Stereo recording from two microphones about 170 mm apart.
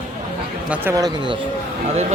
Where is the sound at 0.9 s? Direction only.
25° right (ahead or behind).